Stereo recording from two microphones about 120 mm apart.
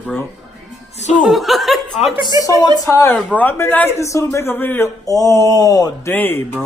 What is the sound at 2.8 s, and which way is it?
Speech, 25° left (ahead or behind).